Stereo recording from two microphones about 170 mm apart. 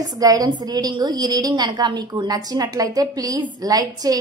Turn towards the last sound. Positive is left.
turn(degrees=-20)  # may be behind; listen again after turning